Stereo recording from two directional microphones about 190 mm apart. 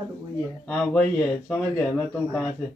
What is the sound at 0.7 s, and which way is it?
Speech, 5° left (ahead or behind).